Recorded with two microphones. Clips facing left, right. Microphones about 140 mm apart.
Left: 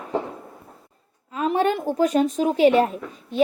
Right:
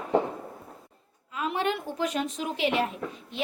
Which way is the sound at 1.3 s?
40° left (ahead or behind).